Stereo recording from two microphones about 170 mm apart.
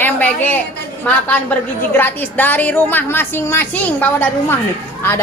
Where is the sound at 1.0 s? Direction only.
10° left (ahead or behind).